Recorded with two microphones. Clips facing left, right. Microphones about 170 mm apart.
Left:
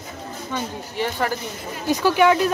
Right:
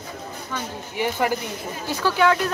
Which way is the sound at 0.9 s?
15° right (ahead or behind).